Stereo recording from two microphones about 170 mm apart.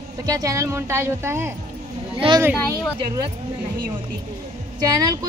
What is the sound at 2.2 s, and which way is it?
Speech, 35° right (ahead or behind).